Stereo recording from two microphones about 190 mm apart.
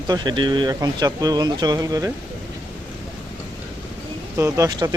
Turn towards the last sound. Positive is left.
turn(degrees=-15)  # may be behind; listen again after turning